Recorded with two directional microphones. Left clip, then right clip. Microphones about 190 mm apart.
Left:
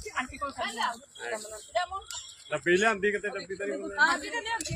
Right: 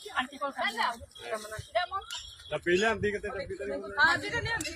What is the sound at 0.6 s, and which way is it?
Speech, centre (ahead or behind).